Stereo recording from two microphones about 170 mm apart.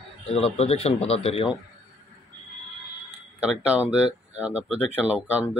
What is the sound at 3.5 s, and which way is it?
Speech, 5° right (ahead or behind).